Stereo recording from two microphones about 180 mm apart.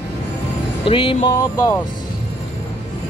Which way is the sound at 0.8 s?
30° left (ahead or behind).